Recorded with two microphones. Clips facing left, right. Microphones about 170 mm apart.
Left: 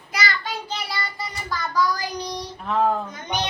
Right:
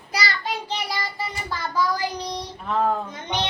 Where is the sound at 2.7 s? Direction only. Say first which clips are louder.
Left 1 dB; centre (ahead or behind).